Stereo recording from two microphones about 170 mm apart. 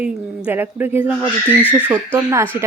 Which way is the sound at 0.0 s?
10° right (ahead or behind).